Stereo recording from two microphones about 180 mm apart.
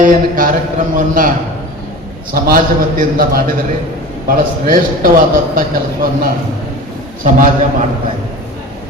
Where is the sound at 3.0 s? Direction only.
50° right (ahead or behind).